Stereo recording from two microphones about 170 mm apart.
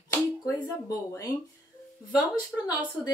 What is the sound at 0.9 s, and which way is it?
Speech, 20° left (ahead or behind).